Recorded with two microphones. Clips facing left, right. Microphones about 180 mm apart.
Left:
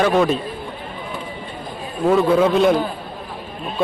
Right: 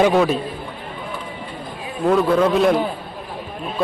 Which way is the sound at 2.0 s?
5° left (ahead or behind).